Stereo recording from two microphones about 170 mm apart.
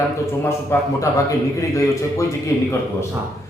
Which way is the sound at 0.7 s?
15° left (ahead or behind).